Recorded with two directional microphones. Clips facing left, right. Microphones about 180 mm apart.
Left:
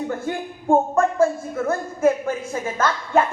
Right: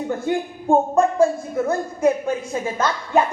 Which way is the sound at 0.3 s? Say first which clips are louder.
Right 2 dB; 20° right (ahead or behind).